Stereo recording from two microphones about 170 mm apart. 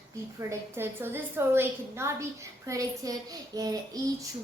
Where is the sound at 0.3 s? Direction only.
15° right (ahead or behind).